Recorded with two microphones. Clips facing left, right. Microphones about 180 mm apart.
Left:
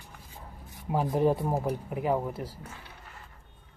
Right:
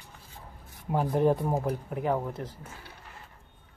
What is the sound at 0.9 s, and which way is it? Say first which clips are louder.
Speech: right 1 dB; 5° left (ahead or behind).